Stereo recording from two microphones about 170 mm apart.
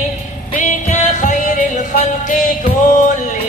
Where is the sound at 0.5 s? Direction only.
50° left (ahead or behind).